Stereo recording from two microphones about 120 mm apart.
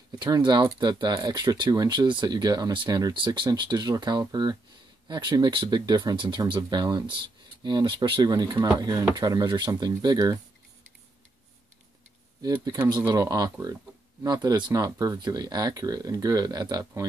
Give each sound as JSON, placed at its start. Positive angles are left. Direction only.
{"t": 0.2, "sound": "speech", "side_deg": -40}
{"t": 12.9, "sound": "speech", "side_deg": -30}